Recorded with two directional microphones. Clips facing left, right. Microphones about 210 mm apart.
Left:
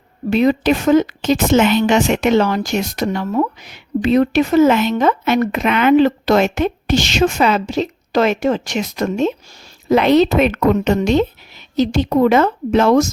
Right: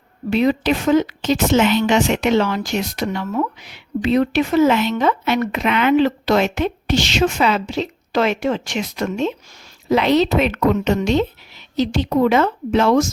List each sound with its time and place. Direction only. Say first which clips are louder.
0.3 s speech: left 3 dB; 45° left (ahead or behind)